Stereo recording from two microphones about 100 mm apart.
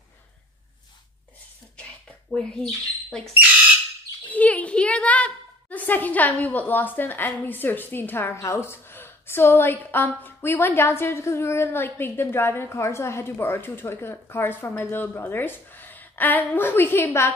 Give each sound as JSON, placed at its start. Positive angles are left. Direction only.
{"t": 1.8, "sound": "rodents", "side_deg": 10}
{"t": 4.3, "sound": "a woman's voice", "side_deg": 15}